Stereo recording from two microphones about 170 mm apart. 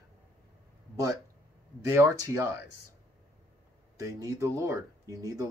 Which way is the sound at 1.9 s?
15° right (ahead or behind).